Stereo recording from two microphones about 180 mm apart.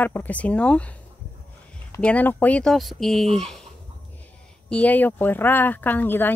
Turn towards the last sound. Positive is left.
turn(degrees=10)  # may be behind; listen again after turning